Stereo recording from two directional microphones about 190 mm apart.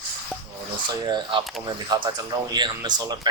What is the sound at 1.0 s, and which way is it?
Speech, 20° right (ahead or behind).